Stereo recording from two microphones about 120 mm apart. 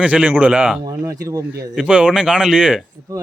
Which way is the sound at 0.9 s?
30° right (ahead or behind).